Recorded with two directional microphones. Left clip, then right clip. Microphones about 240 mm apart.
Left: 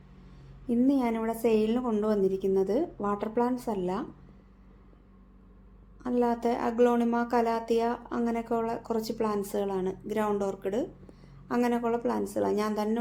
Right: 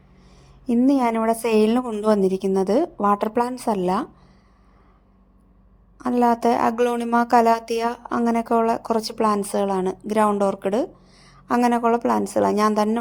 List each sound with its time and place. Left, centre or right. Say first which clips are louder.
0.7 s a woman's voice: right 8 dB; right
6.0 s a woman's voice: right 9 dB; right